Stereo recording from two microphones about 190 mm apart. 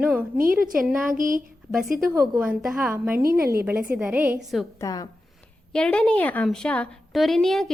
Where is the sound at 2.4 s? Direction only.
5° right (ahead or behind).